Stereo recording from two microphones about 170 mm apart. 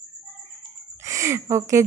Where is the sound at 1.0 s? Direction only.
15° right (ahead or behind).